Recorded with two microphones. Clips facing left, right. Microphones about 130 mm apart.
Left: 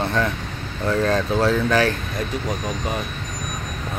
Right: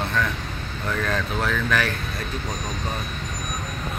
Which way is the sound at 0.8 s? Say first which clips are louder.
Left 6 dB; 30° left (ahead or behind).